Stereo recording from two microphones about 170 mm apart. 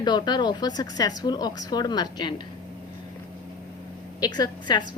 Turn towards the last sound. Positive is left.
turn(degrees=25)  # may be behind; listen again after turning